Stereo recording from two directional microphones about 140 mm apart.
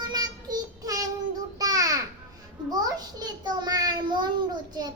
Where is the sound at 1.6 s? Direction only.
25° right (ahead or behind).